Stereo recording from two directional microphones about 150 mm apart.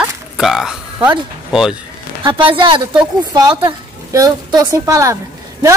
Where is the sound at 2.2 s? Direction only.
35° right (ahead or behind).